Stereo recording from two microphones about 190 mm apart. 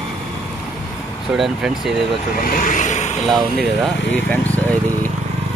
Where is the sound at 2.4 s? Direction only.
45° left (ahead or behind).